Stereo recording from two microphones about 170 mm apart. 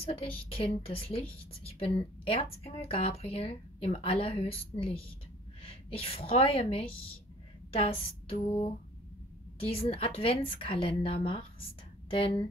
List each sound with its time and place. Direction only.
0.0 s a woman's voice: 35° left (ahead or behind)